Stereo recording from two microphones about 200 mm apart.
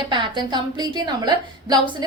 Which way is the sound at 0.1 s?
25° right (ahead or behind).